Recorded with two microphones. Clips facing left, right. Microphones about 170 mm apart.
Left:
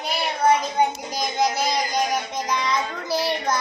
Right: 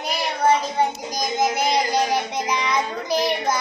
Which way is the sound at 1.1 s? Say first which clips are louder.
Right 2 dB; 45° right (ahead or behind).